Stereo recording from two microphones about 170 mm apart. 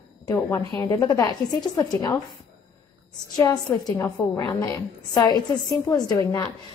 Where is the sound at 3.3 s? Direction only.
20° left (ahead or behind).